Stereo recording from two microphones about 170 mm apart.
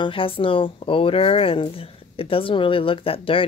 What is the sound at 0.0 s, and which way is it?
Speech, 30° left (ahead or behind).